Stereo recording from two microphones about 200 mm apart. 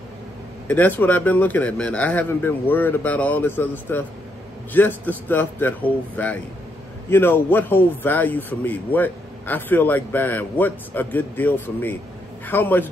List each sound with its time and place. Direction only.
0.7 s a man's voice: 10° left (ahead or behind)